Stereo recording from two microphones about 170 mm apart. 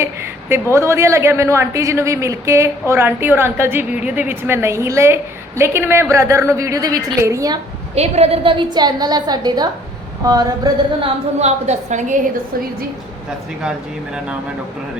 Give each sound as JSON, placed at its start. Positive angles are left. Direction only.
{"t": 0.0, "sound": "a woman's voice", "side_deg": -15}
{"t": 7.9, "sound": "a woman's voice", "side_deg": -40}
{"t": 11.3, "sound": "a woman's voice", "side_deg": -40}